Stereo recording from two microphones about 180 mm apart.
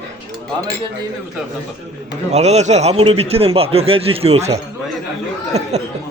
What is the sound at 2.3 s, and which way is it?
A man's voice, 40° right (ahead or behind).